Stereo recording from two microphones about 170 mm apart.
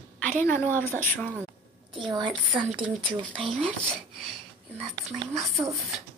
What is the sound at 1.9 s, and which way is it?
Speech, 30° right (ahead or behind).